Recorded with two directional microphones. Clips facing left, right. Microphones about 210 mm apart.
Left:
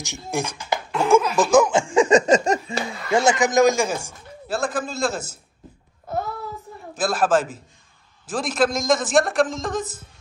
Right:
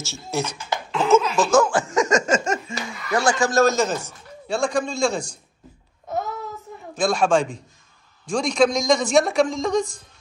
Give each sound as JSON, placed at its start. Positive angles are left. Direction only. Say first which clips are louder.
{"t": 0.0, "sound": "speech", "louder": "even", "side_deg": 15}
{"t": 1.9, "sound": "speech", "louder": "left 4 dB", "side_deg": 30}
{"t": 7.0, "sound": "a man's voice", "louder": "right 1 dB", "side_deg": 5}